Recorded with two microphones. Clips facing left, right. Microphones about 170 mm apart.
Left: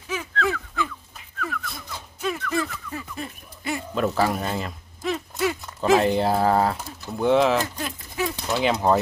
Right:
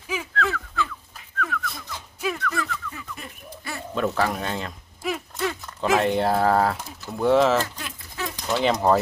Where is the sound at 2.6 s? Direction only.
25° left (ahead or behind).